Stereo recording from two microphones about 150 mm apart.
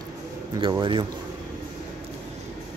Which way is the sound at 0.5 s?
30° right (ahead or behind).